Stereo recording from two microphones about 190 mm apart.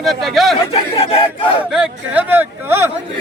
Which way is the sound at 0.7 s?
30° left (ahead or behind).